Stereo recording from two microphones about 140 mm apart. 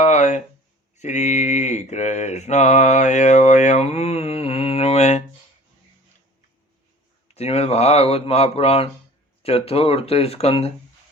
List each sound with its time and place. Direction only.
0.0 s a sound: 55° left (ahead or behind)
0.9 s mantra: 55° left (ahead or behind)
7.3 s speech: 50° left (ahead or behind)